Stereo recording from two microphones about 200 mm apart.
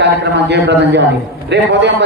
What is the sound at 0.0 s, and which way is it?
Speech, 60° right (ahead or behind).